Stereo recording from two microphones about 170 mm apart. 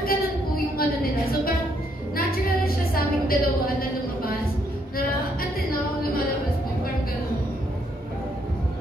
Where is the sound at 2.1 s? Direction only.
60° left (ahead or behind).